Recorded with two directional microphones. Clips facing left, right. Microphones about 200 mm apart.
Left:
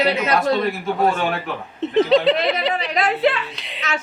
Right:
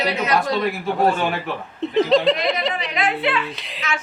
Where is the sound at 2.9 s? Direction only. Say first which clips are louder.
Left 4 dB; 40° left (ahead or behind).